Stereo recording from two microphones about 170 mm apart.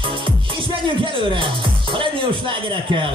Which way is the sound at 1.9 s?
30° right (ahead or behind).